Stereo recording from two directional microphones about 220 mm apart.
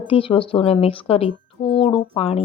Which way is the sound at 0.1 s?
25° left (ahead or behind).